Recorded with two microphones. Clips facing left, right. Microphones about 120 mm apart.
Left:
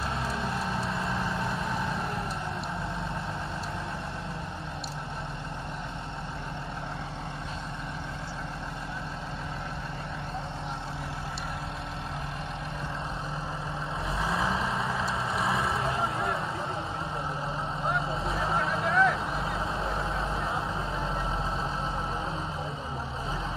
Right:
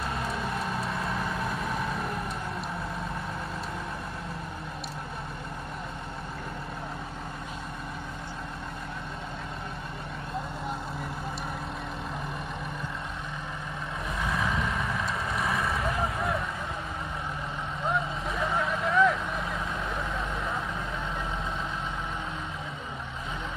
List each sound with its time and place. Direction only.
0.1 s vehicle: centre (ahead or behind)
14.1 s vehicle: 30° left (ahead or behind)
16.0 s vehicle: centre (ahead or behind)
18.2 s vehicle: 30° left (ahead or behind)
18.9 s vehicle: centre (ahead or behind)
19.3 s vehicle: 30° left (ahead or behind)